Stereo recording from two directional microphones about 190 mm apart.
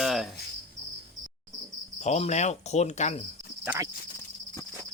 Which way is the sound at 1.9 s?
35° left (ahead or behind).